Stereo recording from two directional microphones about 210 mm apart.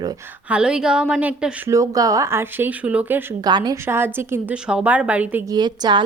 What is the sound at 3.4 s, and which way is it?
A woman's voice, 20° right (ahead or behind).